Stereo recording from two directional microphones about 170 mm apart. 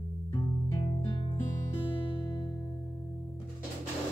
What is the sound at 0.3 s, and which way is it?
Music, 25° left (ahead or behind).